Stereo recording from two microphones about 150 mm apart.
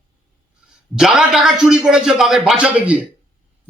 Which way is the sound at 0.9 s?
Centre (ahead or behind).